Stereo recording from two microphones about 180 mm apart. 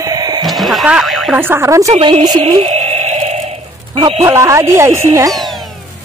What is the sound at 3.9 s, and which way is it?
Speech, 30° right (ahead or behind).